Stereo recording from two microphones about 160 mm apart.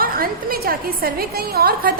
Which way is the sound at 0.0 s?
65° right (ahead or behind).